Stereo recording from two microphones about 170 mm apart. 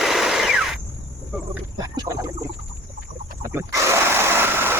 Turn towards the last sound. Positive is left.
turn(degrees=-15)  # may be behind; listen again after turning